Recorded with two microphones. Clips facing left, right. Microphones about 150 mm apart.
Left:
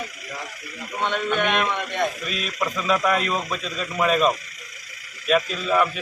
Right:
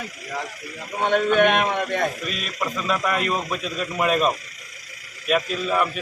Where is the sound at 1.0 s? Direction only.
50° right (ahead or behind).